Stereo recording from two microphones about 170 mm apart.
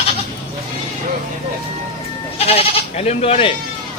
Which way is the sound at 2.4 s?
35° left (ahead or behind).